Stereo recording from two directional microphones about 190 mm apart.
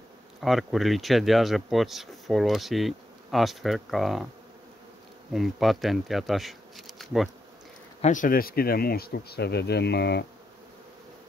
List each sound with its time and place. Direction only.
0.4 s speech: centre (ahead or behind)
5.3 s speech: centre (ahead or behind)
8.0 s speech: 45° left (ahead or behind); by 10.2 s 60° left (ahead or behind)